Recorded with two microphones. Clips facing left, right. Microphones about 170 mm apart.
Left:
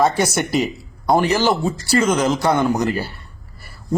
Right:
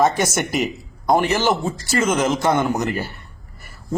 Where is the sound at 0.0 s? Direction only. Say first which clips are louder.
Left 1 dB; 20° right (ahead or behind).